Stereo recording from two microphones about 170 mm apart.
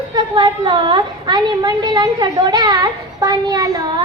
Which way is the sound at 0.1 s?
25° right (ahead or behind).